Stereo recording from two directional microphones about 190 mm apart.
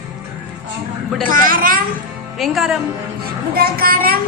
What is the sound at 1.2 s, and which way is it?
Speech, 45° right (ahead or behind).